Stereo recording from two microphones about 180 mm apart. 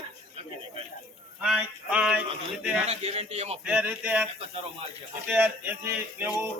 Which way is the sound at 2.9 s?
35° right (ahead or behind).